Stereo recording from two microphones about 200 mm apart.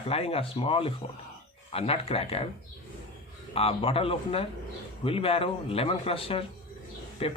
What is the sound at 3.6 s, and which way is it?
Speech, 30° left (ahead or behind).